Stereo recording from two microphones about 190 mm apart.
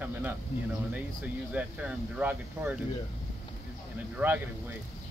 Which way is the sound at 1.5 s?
5° right (ahead or behind).